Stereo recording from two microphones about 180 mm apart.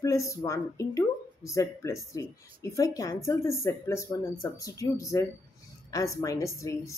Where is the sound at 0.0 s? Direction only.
15° left (ahead or behind).